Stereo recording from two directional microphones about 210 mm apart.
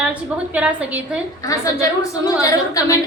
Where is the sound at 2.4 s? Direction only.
15° left (ahead or behind).